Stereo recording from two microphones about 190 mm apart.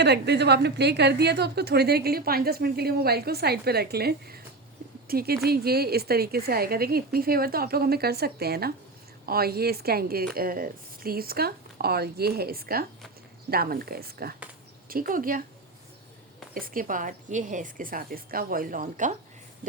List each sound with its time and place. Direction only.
0.0 s a woman's voice: 60° right (ahead or behind)
16.6 s a woman's voice: 50° right (ahead or behind)